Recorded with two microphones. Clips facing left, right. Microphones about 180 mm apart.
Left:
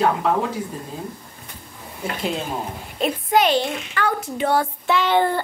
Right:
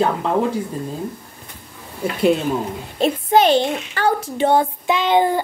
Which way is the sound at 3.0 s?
30° right (ahead or behind).